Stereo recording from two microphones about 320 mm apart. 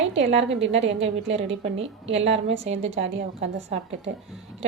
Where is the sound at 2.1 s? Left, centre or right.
Centre.